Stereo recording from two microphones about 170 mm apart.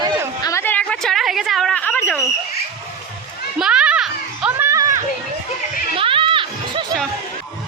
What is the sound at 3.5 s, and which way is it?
Children playing, 5° right (ahead or behind).